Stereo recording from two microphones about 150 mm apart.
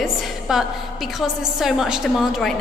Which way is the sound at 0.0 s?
5° right (ahead or behind).